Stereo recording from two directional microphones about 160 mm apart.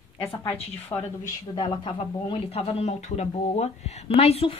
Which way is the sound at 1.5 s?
30° left (ahead or behind).